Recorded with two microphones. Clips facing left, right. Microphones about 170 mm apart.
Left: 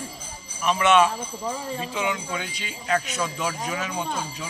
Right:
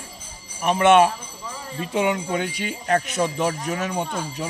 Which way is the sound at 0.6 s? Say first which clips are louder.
Right 4 dB; 55° right (ahead or behind).